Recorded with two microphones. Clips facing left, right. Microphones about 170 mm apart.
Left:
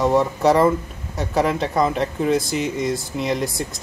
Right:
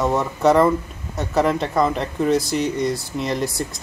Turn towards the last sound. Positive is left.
turn(degrees=0)  # may be behind; listen again after turning